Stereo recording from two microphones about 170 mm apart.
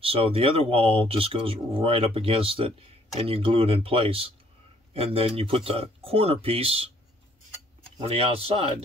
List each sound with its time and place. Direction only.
0.0 s speech: 35° right (ahead or behind)
8.0 s speech: 35° right (ahead or behind)